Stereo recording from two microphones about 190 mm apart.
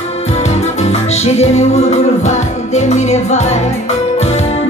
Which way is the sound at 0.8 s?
35° left (ahead or behind).